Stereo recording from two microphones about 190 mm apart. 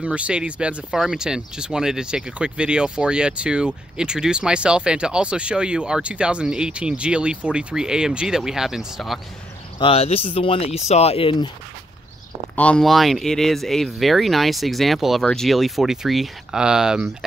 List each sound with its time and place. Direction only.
0.0 s speech: 5° right (ahead or behind)
9.8 s speech: 30° left (ahead or behind)
12.5 s speech: 5° left (ahead or behind)